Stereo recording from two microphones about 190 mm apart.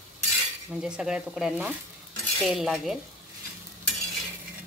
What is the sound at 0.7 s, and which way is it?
Cutlery, 5° right (ahead or behind).